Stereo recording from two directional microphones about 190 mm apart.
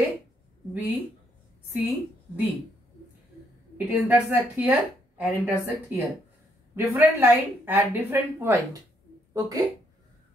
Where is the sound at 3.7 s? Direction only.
10° right (ahead or behind).